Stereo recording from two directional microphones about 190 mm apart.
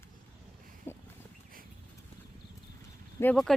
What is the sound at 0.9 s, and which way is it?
Boat, 10° left (ahead or behind).